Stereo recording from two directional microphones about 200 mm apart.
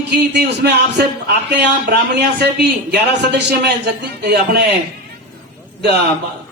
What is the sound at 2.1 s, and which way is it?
A man's voice, 55° right (ahead or behind).